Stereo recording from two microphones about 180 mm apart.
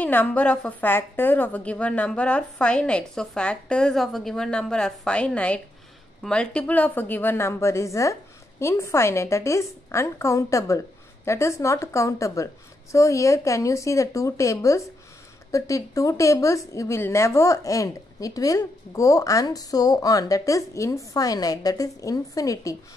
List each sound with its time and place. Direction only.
0.0 s a woman's voice: 10° left (ahead or behind)